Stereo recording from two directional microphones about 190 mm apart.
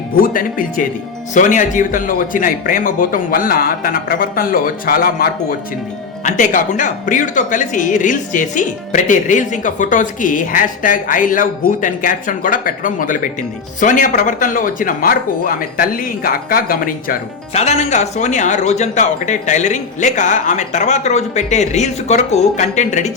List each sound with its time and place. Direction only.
0.2 s speech: 45° left (ahead or behind)
17.5 s speech: 35° left (ahead or behind)